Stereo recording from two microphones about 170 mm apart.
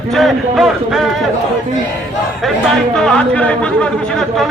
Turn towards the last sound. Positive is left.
turn(degrees=5)  # may be behind; listen again after turning